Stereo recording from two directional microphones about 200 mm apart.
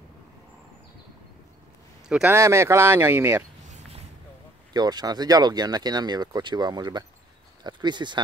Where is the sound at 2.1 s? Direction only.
10° right (ahead or behind).